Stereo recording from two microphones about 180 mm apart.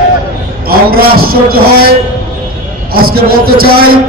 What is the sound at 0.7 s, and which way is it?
Speech, 55° right (ahead or behind).